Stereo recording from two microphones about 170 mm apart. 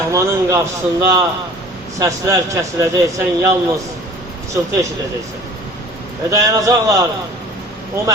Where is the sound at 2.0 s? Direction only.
20° right (ahead or behind).